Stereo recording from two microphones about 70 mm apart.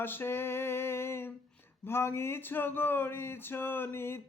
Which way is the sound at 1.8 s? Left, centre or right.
Left.